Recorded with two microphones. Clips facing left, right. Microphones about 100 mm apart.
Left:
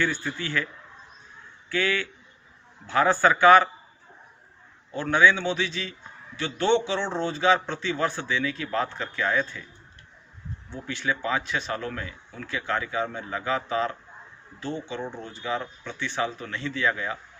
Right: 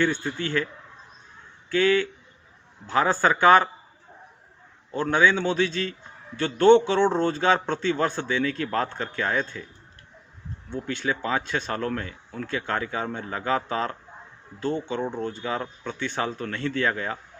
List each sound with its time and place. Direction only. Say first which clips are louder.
0.2 s a man's voice: right 3 dB; 45° right (ahead or behind)
1.7 s speech: right 6 dB; 40° right (ahead or behind)
2.9 s a man's voice: left 1 dB; 20° right (ahead or behind)
3.4 s speech: left 1 dB; 35° right (ahead or behind)
5.3 s a man's voice: right 3 dB; 45° right (ahead or behind)
10.8 s a man's voice: even; 40° right (ahead or behind)
14.6 s a man's voice: right 5 dB; 50° right (ahead or behind)